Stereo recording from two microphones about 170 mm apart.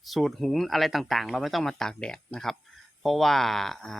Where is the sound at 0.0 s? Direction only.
Centre (ahead or behind).